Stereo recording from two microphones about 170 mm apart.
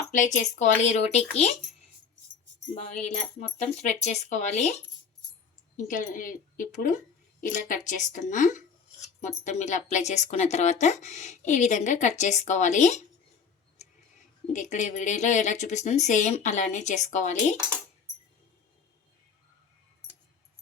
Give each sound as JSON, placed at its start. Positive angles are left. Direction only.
{"t": 0.1, "sound": "speech", "side_deg": 45}
{"t": 2.7, "sound": "speech", "side_deg": 40}
{"t": 14.4, "sound": "speech", "side_deg": 45}